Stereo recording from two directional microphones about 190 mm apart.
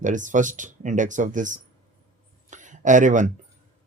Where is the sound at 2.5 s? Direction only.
40° right (ahead or behind).